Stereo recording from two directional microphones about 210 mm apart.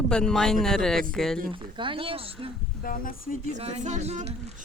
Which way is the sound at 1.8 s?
25° right (ahead or behind).